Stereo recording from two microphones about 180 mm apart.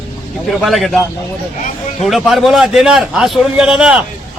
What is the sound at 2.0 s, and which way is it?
A man's voice, centre (ahead or behind).